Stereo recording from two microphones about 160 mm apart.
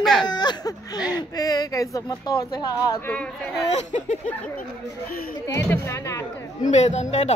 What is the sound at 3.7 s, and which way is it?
Speech, 45° left (ahead or behind).